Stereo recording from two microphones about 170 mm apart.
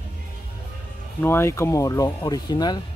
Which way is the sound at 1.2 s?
15° left (ahead or behind).